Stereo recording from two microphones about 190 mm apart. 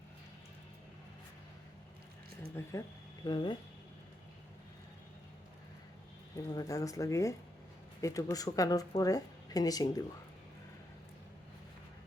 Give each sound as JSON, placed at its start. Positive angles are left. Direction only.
{"t": 2.6, "sound": "speech", "side_deg": 15}
{"t": 3.2, "sound": "speech", "side_deg": 25}
{"t": 6.3, "sound": "speech", "side_deg": 20}